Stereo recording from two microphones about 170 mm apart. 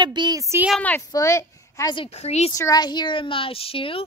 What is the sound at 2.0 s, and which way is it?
Speech, 40° left (ahead or behind).